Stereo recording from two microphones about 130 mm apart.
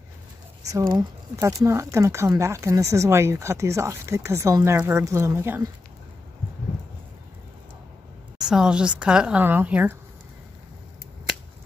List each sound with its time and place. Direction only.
0.9 s speech: 25° right (ahead or behind)
8.4 s speech: 5° right (ahead or behind)